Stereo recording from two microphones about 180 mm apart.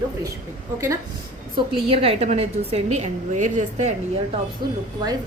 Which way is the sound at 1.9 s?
35° right (ahead or behind).